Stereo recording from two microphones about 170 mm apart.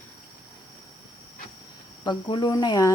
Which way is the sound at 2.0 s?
25° left (ahead or behind).